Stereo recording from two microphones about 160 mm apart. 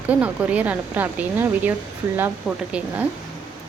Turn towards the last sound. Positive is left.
turn(degrees=-10)  # may be behind; listen again after turning